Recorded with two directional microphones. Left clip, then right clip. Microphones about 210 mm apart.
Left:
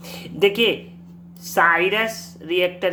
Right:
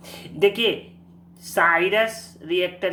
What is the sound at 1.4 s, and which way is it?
Speech, 15° left (ahead or behind).